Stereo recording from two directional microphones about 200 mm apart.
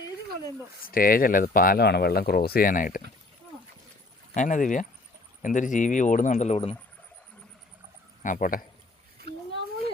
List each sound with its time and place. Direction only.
0.9 s speech: 45° left (ahead or behind)
4.4 s speech: 40° left (ahead or behind)
8.2 s speech: 40° left (ahead or behind)
9.2 s a sound: 50° right (ahead or behind)